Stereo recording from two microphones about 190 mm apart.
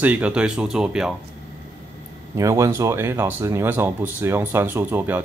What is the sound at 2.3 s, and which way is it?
Speech, 15° right (ahead or behind).